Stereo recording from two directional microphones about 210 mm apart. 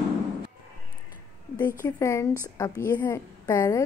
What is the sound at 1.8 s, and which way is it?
A woman's voice, 15° left (ahead or behind).